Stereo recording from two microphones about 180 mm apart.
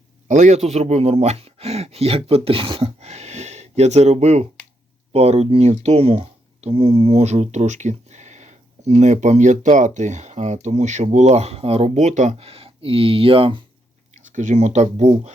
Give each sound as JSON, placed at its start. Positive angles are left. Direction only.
{"t": 0.3, "sound": "speech", "side_deg": -45}
{"t": 14.2, "sound": "speech", "side_deg": -45}